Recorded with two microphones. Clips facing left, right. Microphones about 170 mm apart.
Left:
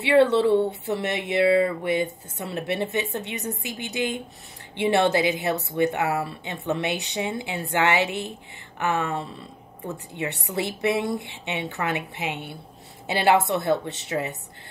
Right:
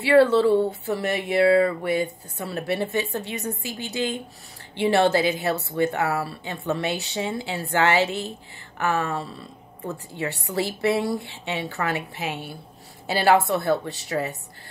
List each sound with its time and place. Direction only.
0.0 s a woman's voice: 20° left (ahead or behind)